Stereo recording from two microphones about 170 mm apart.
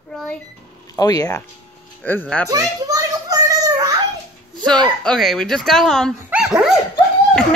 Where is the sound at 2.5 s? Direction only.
20° right (ahead or behind).